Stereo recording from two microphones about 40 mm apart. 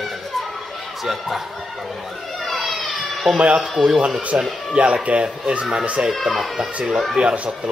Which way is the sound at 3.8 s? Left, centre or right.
Right.